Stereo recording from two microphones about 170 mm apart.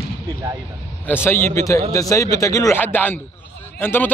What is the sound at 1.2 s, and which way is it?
A man's voice, 15° left (ahead or behind).